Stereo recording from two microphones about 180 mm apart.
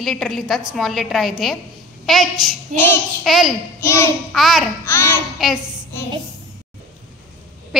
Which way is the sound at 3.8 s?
15° left (ahead or behind).